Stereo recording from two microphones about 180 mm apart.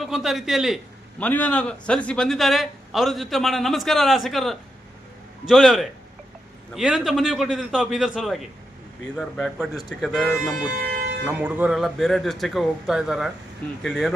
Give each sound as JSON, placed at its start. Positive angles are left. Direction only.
{"t": 0.0, "sound": "a man's voice", "side_deg": 0}
{"t": 10.8, "sound": "a sound", "side_deg": -55}
{"t": 11.3, "sound": "a man's voice", "side_deg": -10}